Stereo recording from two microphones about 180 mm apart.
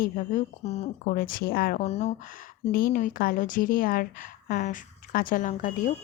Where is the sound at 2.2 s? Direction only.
55° left (ahead or behind).